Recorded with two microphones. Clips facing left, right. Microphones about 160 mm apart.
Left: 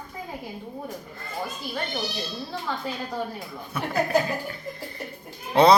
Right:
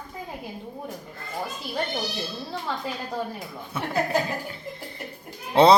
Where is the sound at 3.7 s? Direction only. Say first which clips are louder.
Left 1 dB; 25° right (ahead or behind).